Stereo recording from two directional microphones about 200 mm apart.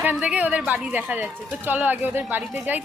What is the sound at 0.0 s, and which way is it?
Speech, 5° right (ahead or behind).